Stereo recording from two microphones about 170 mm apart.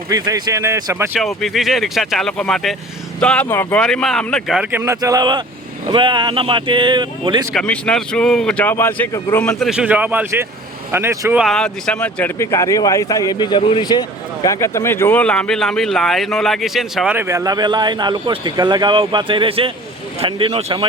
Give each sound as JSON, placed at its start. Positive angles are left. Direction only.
{"t": 0.1, "sound": "a man's voice", "side_deg": -20}
{"t": 1.2, "sound": "speech", "side_deg": 0}
{"t": 4.8, "sound": "a man's voice", "side_deg": -20}
{"t": 7.5, "sound": "speech", "side_deg": 5}
{"t": 11.3, "sound": "speech", "side_deg": 0}
{"t": 17.2, "sound": "a man's voice", "side_deg": -15}